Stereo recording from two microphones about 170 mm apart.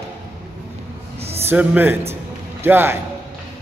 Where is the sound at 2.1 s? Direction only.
10° right (ahead or behind).